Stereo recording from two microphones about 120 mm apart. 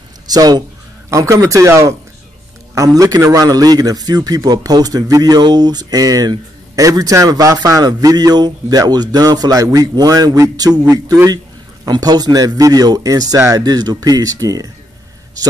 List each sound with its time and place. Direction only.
0.3 s a man's voice: 35° right (ahead or behind)